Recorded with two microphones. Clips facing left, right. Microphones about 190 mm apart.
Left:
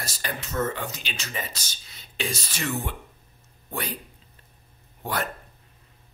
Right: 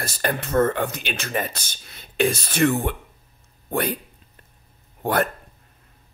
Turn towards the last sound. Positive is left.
turn(degrees=-55)  # may be behind; listen again after turning